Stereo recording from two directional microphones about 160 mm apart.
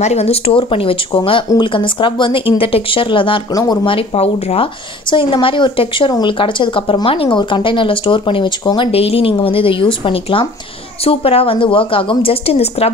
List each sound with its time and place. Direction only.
0.0 s speech: 40° left (ahead or behind)